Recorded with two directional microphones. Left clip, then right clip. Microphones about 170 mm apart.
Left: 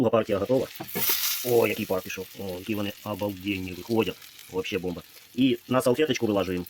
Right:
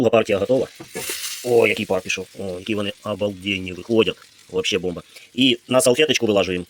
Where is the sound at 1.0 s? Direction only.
35° left (ahead or behind).